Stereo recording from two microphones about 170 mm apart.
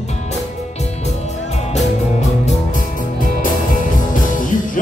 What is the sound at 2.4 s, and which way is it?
Music, 50° left (ahead or behind).